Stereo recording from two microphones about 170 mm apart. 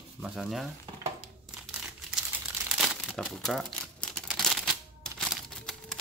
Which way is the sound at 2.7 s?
5° right (ahead or behind).